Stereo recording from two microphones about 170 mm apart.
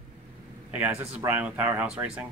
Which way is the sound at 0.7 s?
10° right (ahead or behind).